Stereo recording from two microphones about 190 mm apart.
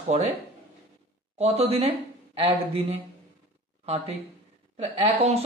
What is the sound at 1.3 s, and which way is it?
Speech, 35° right (ahead or behind).